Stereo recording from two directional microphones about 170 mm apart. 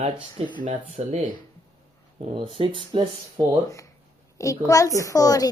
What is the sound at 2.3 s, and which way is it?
Speech, 30° right (ahead or behind).